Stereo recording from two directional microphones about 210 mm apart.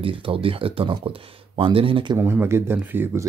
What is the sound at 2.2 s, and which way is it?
Speech, 10° right (ahead or behind).